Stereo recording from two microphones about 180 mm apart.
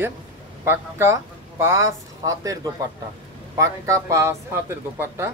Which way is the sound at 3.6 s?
15° right (ahead or behind).